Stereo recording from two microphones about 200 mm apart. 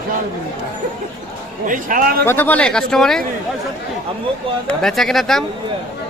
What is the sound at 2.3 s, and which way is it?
Speech, 10° left (ahead or behind).